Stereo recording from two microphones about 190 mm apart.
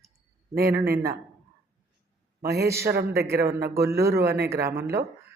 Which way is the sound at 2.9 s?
55° right (ahead or behind).